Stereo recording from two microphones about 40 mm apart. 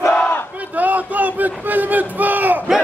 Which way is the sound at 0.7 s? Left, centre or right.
Right.